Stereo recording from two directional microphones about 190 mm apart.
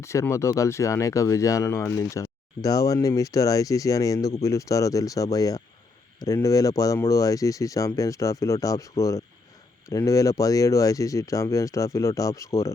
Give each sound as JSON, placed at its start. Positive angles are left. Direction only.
{"t": 0.0, "sound": "speech", "side_deg": 15}